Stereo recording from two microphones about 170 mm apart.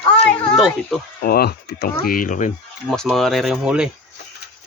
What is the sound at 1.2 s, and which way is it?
Speech, 65° left (ahead or behind).